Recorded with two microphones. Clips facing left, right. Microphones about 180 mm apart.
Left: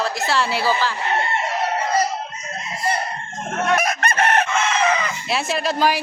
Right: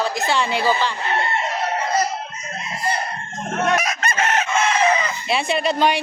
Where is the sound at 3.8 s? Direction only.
55° left (ahead or behind).